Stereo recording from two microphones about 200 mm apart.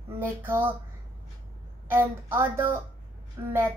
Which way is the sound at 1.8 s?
10° right (ahead or behind).